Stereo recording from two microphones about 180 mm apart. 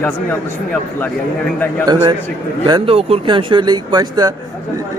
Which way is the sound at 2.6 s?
30° right (ahead or behind).